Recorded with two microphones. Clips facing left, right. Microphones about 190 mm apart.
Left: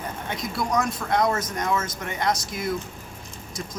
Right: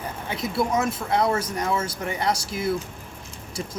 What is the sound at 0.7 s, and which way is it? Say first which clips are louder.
Speech: left 4 dB; 30° right (ahead or behind).